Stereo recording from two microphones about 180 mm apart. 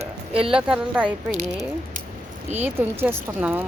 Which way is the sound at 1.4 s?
40° right (ahead or behind).